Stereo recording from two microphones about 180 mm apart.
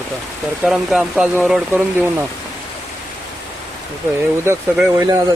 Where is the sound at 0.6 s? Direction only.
Centre (ahead or behind).